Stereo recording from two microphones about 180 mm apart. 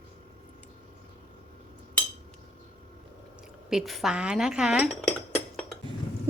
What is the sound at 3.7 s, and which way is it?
Speech, centre (ahead or behind).